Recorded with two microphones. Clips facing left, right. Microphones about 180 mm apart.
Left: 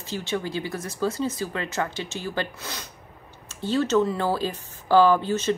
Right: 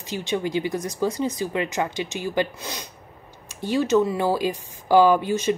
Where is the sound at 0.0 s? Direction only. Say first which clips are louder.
Right 3 dB; 15° right (ahead or behind).